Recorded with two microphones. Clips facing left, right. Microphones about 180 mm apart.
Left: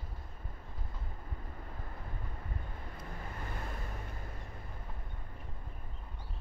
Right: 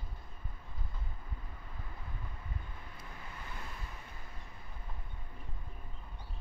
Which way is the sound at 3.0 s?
50° left (ahead or behind).